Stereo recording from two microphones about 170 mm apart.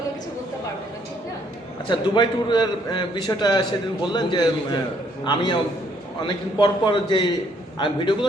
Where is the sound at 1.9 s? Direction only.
25° left (ahead or behind).